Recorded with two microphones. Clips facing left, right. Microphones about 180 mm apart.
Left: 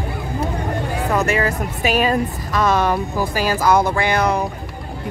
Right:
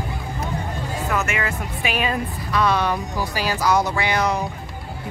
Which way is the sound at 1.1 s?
35° left (ahead or behind).